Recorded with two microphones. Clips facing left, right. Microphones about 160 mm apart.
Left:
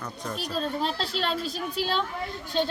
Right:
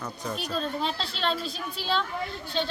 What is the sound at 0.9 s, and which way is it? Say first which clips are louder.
A woman's voice: left 1 dB; 40° left (ahead or behind).